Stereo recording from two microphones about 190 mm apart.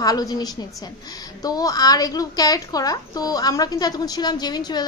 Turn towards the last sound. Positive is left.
turn(degrees=20)  # may be behind; listen again after turning